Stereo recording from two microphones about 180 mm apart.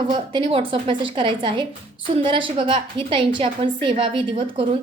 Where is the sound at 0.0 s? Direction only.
25° right (ahead or behind).